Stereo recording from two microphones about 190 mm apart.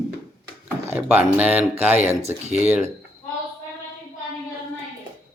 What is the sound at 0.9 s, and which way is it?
Speech, 10° right (ahead or behind).